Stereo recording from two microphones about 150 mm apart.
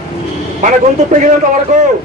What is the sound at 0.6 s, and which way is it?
Speech, 55° right (ahead or behind).